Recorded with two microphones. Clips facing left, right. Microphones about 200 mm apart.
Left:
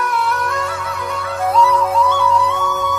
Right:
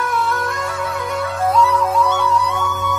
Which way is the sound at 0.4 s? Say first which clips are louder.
Left 1 dB; 30° right (ahead or behind).